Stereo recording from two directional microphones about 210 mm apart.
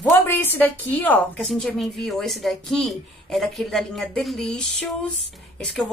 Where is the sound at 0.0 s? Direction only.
10° left (ahead or behind).